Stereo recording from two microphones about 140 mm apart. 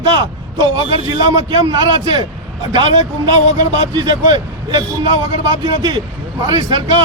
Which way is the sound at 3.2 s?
30° right (ahead or behind).